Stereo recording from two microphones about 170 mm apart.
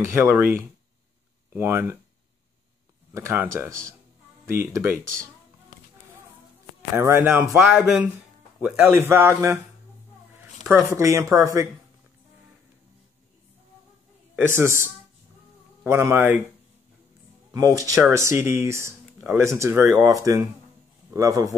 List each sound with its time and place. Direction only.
0.0 s speech: 15° right (ahead or behind)
3.1 s speech: 15° right (ahead or behind)
7.0 s speech: 15° right (ahead or behind)
7.5 s speech: 5° right (ahead or behind)
10.7 s speech: 15° right (ahead or behind)
14.3 s a woman's voice: 15° right (ahead or behind)
17.5 s a man's voice: 20° right (ahead or behind)